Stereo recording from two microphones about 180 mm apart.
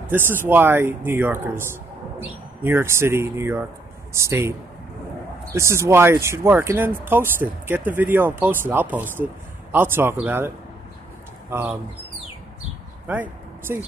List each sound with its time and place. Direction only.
0.1 s speech: 10° right (ahead or behind)
11.5 s speech: 15° right (ahead or behind)
13.0 s a sound: 10° right (ahead or behind)